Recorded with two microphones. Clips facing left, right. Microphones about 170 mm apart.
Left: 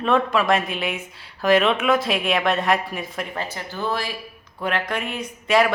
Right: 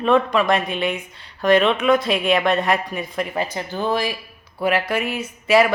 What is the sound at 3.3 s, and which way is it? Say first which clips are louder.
A man's voice: right 5 dB; 15° right (ahead or behind).